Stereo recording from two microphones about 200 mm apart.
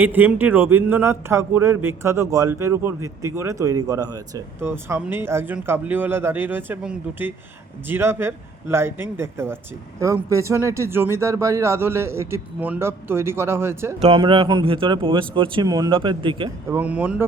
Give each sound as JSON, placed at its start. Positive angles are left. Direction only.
{"t": 0.0, "sound": "speech", "side_deg": -10}
{"t": 14.0, "sound": "speech", "side_deg": -25}
{"t": 16.6, "sound": "speech", "side_deg": -10}